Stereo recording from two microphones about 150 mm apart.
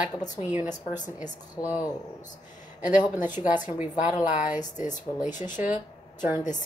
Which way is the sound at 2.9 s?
10° right (ahead or behind).